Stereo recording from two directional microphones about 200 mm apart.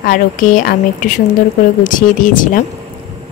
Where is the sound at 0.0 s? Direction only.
45° left (ahead or behind).